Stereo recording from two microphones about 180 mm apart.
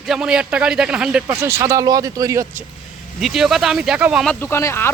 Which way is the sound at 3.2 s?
Centre (ahead or behind).